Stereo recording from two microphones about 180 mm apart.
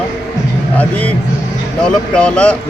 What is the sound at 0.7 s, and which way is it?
Speech, 10° left (ahead or behind).